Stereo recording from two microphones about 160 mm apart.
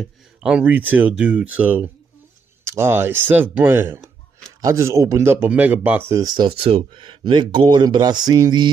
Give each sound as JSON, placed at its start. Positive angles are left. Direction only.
{"t": 0.0, "sound": "a man's voice", "side_deg": -5}